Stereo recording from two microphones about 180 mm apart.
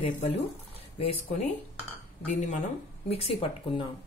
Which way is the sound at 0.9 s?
30° left (ahead or behind).